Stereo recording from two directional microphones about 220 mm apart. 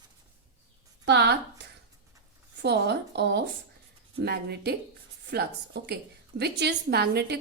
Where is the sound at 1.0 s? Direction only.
50° right (ahead or behind).